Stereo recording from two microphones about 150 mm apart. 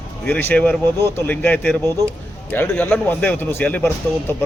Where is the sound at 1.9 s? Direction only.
20° right (ahead or behind).